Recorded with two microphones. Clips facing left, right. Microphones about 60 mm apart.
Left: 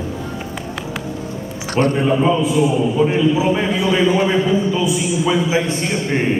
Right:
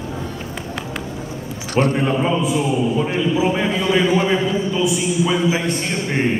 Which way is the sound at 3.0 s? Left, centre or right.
Centre.